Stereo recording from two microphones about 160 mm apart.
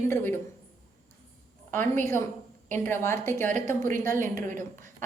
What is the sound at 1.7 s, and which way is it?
A woman's voice, 15° left (ahead or behind).